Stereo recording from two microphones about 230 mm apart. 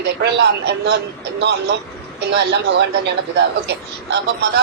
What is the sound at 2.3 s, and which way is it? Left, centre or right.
Speech, right.